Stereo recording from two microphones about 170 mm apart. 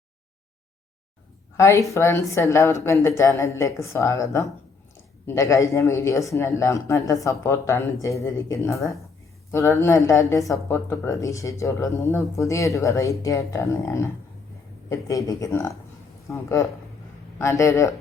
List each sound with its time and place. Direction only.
1.5 s speech: 15° left (ahead or behind)